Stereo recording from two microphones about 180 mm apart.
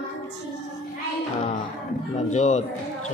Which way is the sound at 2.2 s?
40° left (ahead or behind).